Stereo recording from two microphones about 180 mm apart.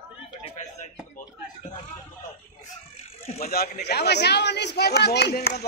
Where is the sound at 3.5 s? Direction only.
60° left (ahead or behind).